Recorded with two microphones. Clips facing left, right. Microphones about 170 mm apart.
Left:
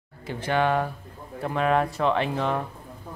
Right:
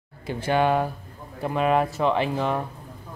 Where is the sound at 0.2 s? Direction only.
10° right (ahead or behind).